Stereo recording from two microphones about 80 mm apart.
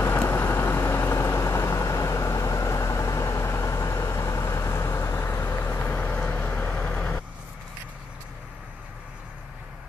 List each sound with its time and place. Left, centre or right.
0.0 s vehicle: left